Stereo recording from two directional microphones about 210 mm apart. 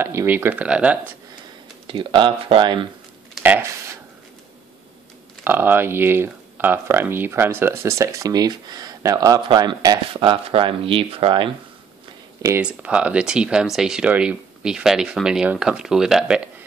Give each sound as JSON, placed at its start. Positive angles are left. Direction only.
{"t": 0.0, "sound": "speech", "side_deg": -10}
{"t": 1.9, "sound": "speech", "side_deg": -25}
{"t": 3.3, "sound": "a sound", "side_deg": -10}
{"t": 5.4, "sound": "speech", "side_deg": -10}
{"t": 12.4, "sound": "speech", "side_deg": -10}